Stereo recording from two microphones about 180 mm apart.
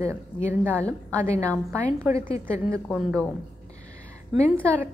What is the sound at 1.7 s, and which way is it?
Speech, 15° right (ahead or behind).